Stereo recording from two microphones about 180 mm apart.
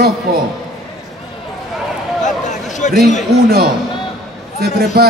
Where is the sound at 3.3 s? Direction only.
60° right (ahead or behind).